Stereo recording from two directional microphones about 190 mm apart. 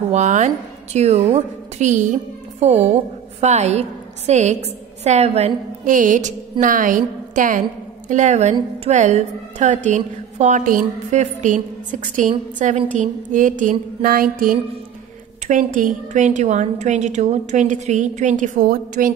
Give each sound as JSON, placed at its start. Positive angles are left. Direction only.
{"t": 0.1, "sound": "a woman's voice", "side_deg": -40}
{"t": 6.6, "sound": "music", "side_deg": -45}
{"t": 8.1, "sound": "a woman's voice", "side_deg": -40}
{"t": 12.9, "sound": "music", "side_deg": -40}
{"t": 15.4, "sound": "a woman's voice", "side_deg": -45}